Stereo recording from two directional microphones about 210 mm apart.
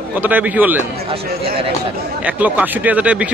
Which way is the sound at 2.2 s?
5° right (ahead or behind).